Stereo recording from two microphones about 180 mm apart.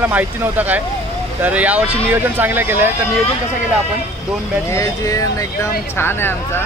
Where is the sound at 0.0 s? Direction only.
10° right (ahead or behind).